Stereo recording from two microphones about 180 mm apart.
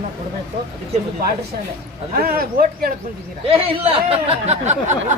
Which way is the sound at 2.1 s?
55° right (ahead or behind).